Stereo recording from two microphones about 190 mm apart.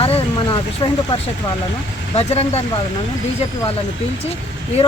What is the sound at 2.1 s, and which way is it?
Speech, 35° left (ahead or behind).